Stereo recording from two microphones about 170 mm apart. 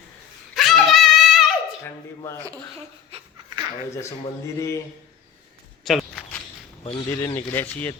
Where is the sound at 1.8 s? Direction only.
15° left (ahead or behind).